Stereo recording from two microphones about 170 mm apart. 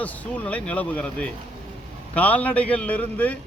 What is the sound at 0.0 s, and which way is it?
Speech, 10° left (ahead or behind).